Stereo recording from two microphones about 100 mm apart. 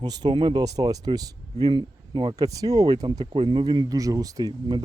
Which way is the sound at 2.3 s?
35° right (ahead or behind).